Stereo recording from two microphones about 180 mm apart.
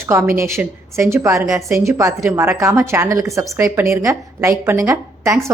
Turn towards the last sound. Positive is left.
turn(degrees=-15)  # may be behind; listen again after turning